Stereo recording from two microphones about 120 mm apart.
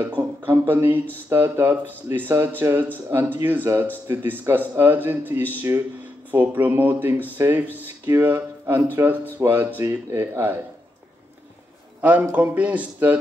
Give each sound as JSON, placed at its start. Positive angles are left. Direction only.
{"t": 0.0, "sound": "a sound", "side_deg": -15}
{"t": 1.3, "sound": "speech", "side_deg": -20}
{"t": 12.0, "sound": "speech", "side_deg": -10}